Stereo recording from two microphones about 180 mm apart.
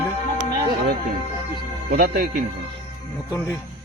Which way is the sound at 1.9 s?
50° right (ahead or behind).